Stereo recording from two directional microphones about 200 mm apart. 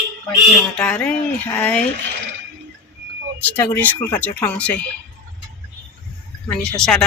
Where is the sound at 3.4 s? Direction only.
10° left (ahead or behind).